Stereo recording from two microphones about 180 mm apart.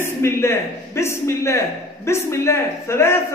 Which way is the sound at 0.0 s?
15° left (ahead or behind).